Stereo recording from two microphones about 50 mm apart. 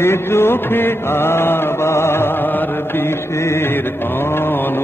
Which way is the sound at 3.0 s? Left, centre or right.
Left.